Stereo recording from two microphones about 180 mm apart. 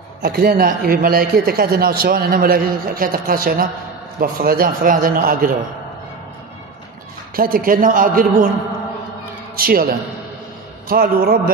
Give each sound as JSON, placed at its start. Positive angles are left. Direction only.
{"t": 0.2, "sound": "a man's voice", "side_deg": -60}
{"t": 7.3, "sound": "a man's voice", "side_deg": -55}
{"t": 9.6, "sound": "a man's voice", "side_deg": -55}